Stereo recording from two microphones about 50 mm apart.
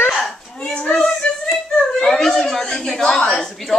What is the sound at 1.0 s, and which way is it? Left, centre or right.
Music, centre.